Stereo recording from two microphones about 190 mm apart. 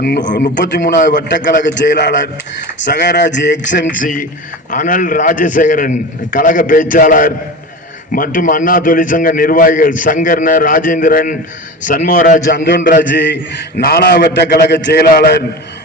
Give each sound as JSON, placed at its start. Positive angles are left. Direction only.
{"t": 0.5, "sound": "speech", "side_deg": 70}
{"t": 0.9, "sound": "a man's voice", "side_deg": 45}
{"t": 1.6, "sound": "a man's voice", "side_deg": 70}
{"t": 4.0, "sound": "a man's voice", "side_deg": 45}
{"t": 13.1, "sound": "a man's voice", "side_deg": 65}